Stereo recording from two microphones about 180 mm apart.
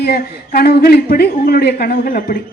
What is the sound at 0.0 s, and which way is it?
A woman's voice, 60° left (ahead or behind).